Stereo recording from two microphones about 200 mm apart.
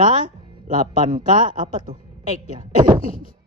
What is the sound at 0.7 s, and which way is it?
Speech, 40° right (ahead or behind).